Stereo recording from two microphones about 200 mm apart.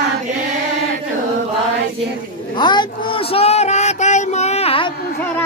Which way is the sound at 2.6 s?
20° left (ahead or behind).